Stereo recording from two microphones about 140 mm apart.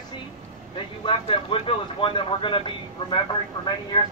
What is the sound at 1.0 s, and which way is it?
Speech, 40° left (ahead or behind).